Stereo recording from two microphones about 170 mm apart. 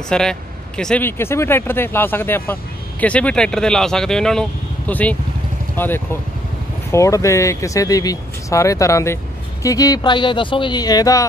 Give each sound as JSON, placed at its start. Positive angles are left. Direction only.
{"t": 0.1, "sound": "speech", "side_deg": 5}